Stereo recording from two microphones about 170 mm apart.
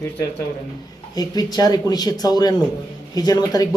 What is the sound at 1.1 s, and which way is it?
A man's voice, 25° left (ahead or behind).